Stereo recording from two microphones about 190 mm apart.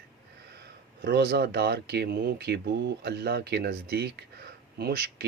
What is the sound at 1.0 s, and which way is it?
Speech, 60° right (ahead or behind).